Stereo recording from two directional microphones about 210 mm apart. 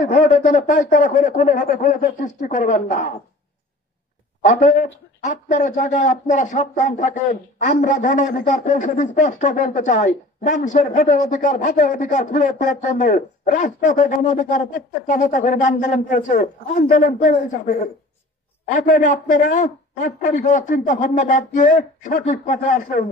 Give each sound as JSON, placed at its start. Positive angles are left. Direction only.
{"t": 0.1, "sound": "a man's voice", "side_deg": 40}
{"t": 4.5, "sound": "a man's voice", "side_deg": 35}